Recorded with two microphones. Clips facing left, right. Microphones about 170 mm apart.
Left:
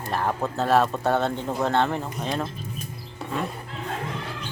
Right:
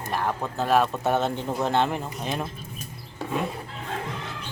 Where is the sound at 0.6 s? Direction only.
10° right (ahead or behind).